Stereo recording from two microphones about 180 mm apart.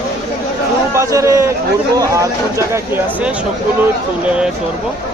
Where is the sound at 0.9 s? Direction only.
15° right (ahead or behind).